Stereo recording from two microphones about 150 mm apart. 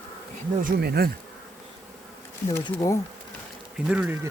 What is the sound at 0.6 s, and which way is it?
Bee, 90° right.